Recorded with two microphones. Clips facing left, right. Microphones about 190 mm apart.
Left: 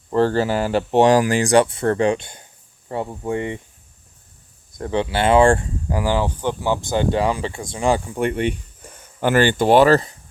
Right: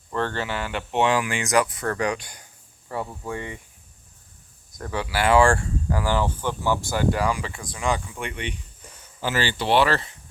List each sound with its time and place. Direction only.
0.1 s speech: 35° left (ahead or behind)
4.8 s speech: 25° left (ahead or behind); by 10.2 s 40° left (ahead or behind)